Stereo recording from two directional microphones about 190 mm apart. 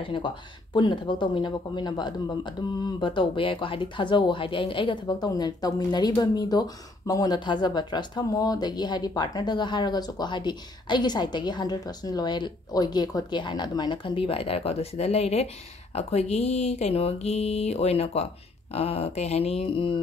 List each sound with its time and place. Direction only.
0.7 s speech: 25° left (ahead or behind)